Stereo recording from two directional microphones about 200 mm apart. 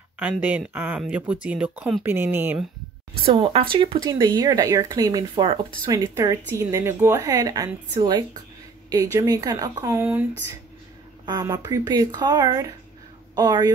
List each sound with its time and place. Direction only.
0.2 s a woman's voice: 10° right (ahead or behind)
3.3 s a woman's voice: 30° right (ahead or behind); by 10.2 s 10° right (ahead or behind)
11.2 s speech: 20° right (ahead or behind)